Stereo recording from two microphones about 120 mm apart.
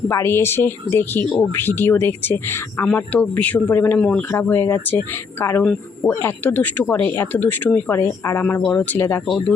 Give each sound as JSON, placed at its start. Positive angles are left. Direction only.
{"t": 0.1, "sound": "speech", "side_deg": 20}
{"t": 4.3, "sound": "speech", "side_deg": 20}
{"t": 8.6, "sound": "speech", "side_deg": 10}